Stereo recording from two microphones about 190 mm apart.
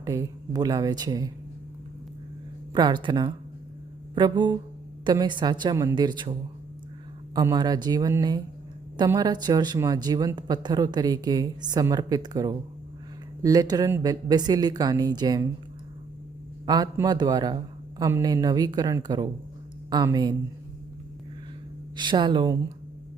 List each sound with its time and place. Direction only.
0.0 s speech: 15° right (ahead or behind)
2.7 s speech: 25° right (ahead or behind)
7.3 s speech: 20° right (ahead or behind)
16.6 s speech: 20° right (ahead or behind)
21.9 s speech: 25° right (ahead or behind)